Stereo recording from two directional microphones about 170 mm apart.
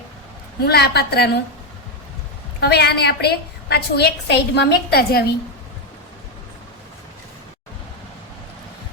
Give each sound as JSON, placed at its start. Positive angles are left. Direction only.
{"t": 0.6, "sound": "a woman's voice", "side_deg": 70}
{"t": 2.6, "sound": "a woman's voice", "side_deg": 70}